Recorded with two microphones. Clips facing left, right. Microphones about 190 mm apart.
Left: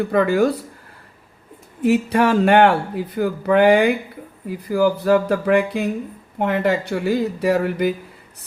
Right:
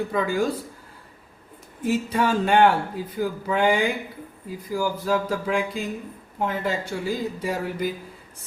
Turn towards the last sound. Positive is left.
turn(degrees=65)  # may be behind; listen again after turning